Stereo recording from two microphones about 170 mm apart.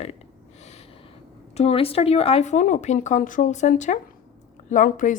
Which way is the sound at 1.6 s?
35° left (ahead or behind).